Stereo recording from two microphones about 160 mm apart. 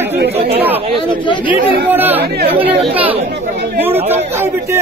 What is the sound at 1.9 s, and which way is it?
Speech, 10° right (ahead or behind).